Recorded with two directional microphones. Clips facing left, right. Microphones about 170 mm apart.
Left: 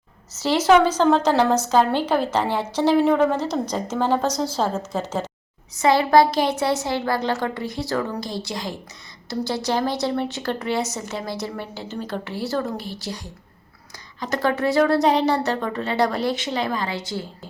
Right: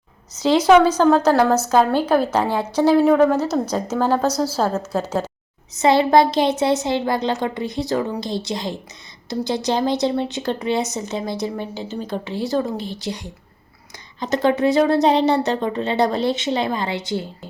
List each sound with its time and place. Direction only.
0.3 s a woman's voice: 15° right (ahead or behind)
5.7 s speech: 25° right (ahead or behind)